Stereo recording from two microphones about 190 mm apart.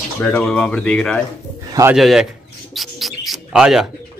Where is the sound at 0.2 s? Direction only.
5° left (ahead or behind).